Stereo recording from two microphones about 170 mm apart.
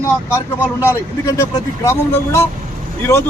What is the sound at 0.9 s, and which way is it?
Speech, 20° left (ahead or behind).